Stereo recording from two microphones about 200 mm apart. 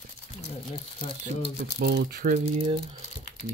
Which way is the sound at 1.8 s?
50° right (ahead or behind).